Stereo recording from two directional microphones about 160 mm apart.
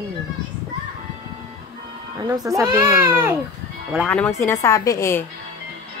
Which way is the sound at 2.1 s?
20° right (ahead or behind).